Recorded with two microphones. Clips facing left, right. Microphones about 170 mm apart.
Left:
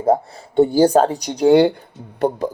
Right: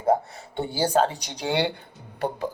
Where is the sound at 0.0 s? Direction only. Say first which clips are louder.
Left 5 dB; 35° left (ahead or behind).